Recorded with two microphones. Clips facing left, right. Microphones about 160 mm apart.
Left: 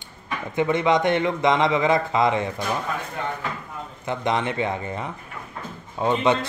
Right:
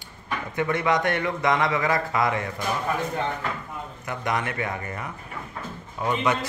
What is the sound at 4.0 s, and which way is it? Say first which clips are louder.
A man's voice: left 4 dB; 25° left (ahead or behind).